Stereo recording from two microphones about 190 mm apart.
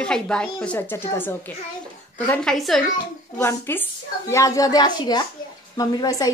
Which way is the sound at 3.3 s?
15° left (ahead or behind).